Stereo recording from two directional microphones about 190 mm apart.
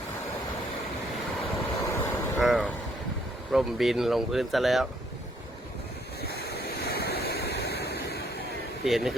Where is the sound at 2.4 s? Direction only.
Centre (ahead or behind).